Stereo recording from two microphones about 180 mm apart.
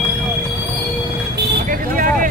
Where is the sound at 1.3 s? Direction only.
55° right (ahead or behind).